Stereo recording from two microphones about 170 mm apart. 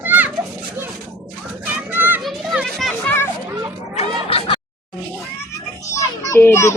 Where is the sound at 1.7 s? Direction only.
10° right (ahead or behind).